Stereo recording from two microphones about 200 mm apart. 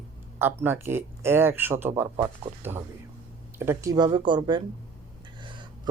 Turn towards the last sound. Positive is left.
turn(degrees=-25)  # may be behind; listen again after turning